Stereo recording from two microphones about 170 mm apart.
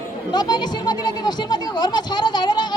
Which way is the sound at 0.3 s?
25° left (ahead or behind).